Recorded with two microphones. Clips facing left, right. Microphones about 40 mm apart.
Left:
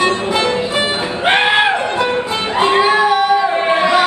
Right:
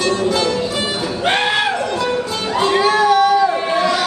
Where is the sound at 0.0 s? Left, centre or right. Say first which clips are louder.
Left 2 dB; left.